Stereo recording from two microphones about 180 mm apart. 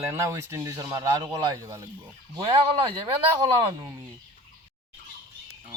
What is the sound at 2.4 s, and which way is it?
Speech, 30° right (ahead or behind).